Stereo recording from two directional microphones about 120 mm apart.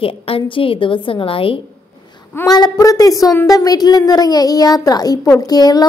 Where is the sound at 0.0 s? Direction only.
50° left (ahead or behind).